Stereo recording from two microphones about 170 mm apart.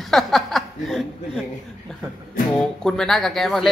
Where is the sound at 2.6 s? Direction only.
Centre (ahead or behind).